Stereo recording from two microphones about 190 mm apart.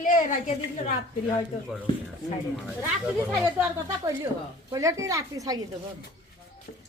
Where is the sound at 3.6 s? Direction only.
15° right (ahead or behind).